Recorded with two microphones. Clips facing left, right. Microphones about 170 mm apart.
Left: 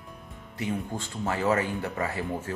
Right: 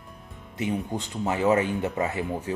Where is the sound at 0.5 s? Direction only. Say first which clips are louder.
Right 3 dB; 20° right (ahead or behind).